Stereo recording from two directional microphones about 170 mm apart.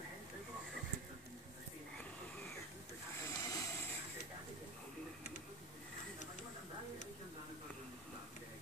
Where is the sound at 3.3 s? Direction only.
15° left (ahead or behind).